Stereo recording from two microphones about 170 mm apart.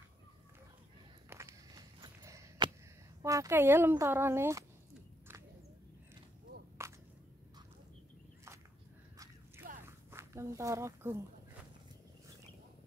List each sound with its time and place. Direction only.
1.3 s walk: 15° right (ahead or behind)
2.0 s horse: 20° right (ahead or behind)
3.2 s a child's voice: 20° right (ahead or behind)
6.8 s whip: 15° right (ahead or behind)
9.8 s a sound: 15° right (ahead or behind)